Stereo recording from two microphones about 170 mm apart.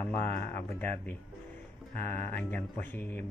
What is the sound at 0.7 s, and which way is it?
Speech, 10° left (ahead or behind).